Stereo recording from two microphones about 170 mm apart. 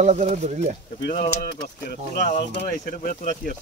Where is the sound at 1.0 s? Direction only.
55° left (ahead or behind).